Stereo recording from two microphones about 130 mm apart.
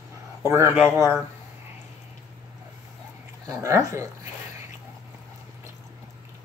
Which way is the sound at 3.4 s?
25° right (ahead or behind).